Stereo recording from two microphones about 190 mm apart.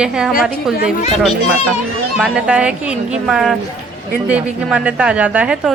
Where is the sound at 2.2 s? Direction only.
5° right (ahead or behind).